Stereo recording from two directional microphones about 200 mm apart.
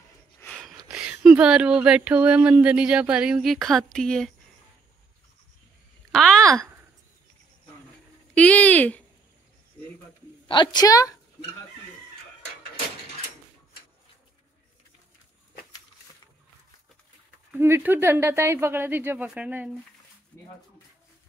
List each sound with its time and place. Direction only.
0.4 s a sound: centre (ahead or behind)
1.2 s speech: 5° right (ahead or behind)
6.1 s a sound: 5° left (ahead or behind)
8.4 s speech: 5° left (ahead or behind)
10.5 s a woman's voice: 20° left (ahead or behind)
17.5 s speech: 10° right (ahead or behind)